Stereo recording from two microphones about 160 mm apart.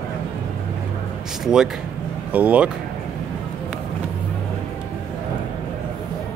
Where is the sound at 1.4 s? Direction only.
5° right (ahead or behind).